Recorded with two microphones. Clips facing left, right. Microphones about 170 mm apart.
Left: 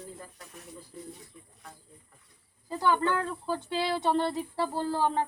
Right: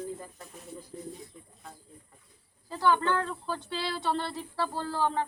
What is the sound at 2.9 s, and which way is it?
Speech, 10° left (ahead or behind).